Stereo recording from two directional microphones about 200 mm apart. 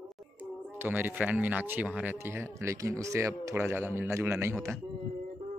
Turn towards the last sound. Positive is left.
turn(degrees=-15)  # may be behind; listen again after turning